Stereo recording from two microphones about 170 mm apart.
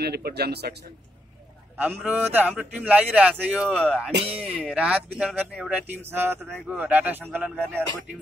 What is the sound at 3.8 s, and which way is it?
Speech, 5° left (ahead or behind).